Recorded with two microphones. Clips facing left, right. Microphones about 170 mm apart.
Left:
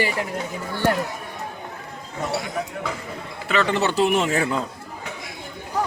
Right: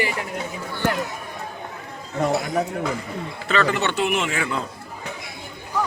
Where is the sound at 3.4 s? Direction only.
15° left (ahead or behind).